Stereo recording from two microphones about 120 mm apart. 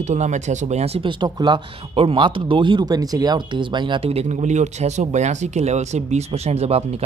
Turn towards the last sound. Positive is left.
turn(degrees=-60)  # may be behind; listen again after turning